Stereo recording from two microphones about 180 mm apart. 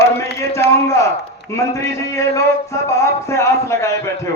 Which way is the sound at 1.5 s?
15° left (ahead or behind).